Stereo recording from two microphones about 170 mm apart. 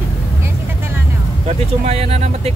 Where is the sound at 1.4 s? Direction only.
35° right (ahead or behind).